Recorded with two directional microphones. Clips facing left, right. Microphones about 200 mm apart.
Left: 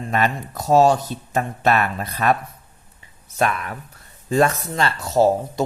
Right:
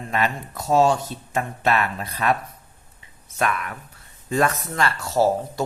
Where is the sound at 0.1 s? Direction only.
40° left (ahead or behind).